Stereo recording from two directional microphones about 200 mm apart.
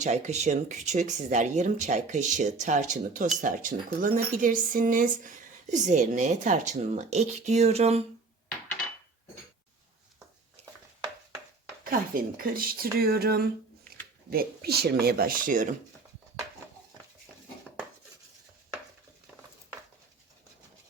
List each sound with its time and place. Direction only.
0.0 s speech: 35° right (ahead or behind)
10.6 s a sound: 30° right (ahead or behind)
11.8 s speech: 45° right (ahead or behind)